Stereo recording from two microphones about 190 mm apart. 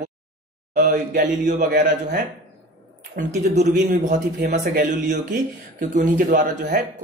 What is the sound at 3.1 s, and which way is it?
A man's voice, 40° right (ahead or behind).